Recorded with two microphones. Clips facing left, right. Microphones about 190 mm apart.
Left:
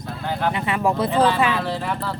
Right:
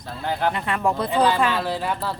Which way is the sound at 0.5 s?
5° left (ahead or behind).